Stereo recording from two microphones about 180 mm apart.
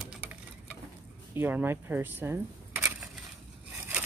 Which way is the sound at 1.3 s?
10° right (ahead or behind).